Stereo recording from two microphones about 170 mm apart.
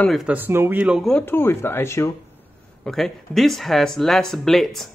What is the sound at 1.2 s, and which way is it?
Speech, 15° left (ahead or behind).